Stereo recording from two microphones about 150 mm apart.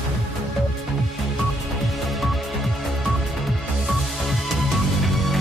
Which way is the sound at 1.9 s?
Centre (ahead or behind).